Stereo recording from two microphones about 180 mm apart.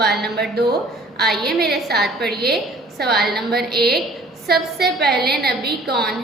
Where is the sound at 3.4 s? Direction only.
60° right (ahead or behind).